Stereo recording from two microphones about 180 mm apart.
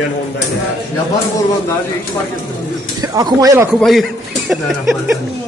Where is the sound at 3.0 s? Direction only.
20° right (ahead or behind).